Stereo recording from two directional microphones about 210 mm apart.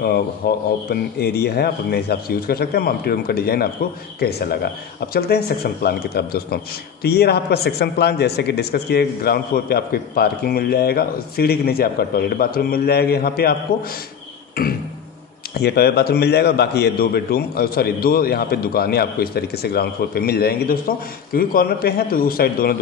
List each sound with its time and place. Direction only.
0.4 s a man's voice: 45° left (ahead or behind)
14.5 s beatboxing: 45° left (ahead or behind)
15.5 s a man's voice: 50° left (ahead or behind)